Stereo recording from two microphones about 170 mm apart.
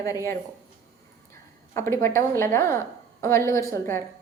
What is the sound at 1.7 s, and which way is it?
A woman's voice, 15° left (ahead or behind).